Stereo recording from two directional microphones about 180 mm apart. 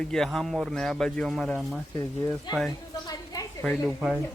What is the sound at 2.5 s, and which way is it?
Speech, 25° left (ahead or behind).